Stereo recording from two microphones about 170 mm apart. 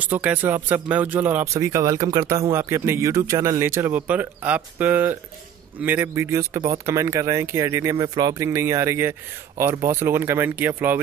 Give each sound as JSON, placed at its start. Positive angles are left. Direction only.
{"t": 0.0, "sound": "speech", "side_deg": -10}